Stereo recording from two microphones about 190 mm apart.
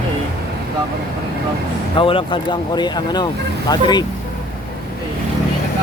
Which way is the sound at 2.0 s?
25° left (ahead or behind).